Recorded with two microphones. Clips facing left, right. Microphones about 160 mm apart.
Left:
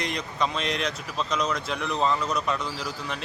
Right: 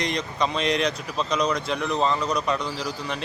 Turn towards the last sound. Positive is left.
turn(degrees=5)  # may be behind; listen again after turning